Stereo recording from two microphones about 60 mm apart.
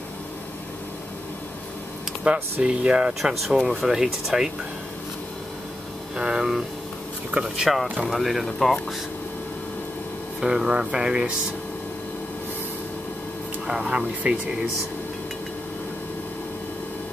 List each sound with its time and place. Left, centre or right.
2.3 s speech: centre
3.4 s speech: centre
6.1 s speech: centre
10.4 s speech: centre
13.7 s speech: centre
14.2 s speech: right